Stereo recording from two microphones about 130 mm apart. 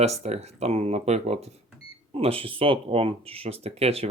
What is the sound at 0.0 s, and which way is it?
Speech, 55° right (ahead or behind).